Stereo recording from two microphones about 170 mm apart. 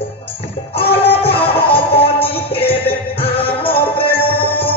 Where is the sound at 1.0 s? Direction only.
35° left (ahead or behind).